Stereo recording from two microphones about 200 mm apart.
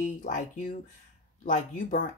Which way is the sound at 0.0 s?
40° left (ahead or behind).